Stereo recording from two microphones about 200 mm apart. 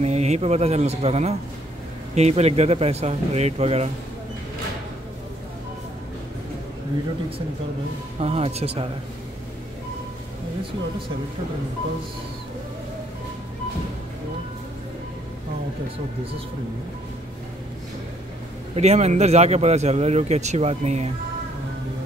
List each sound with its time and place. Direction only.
0.0 s speech: 35° right (ahead or behind)
8.2 s speech: 30° right (ahead or behind)
18.8 s speech: 35° right (ahead or behind)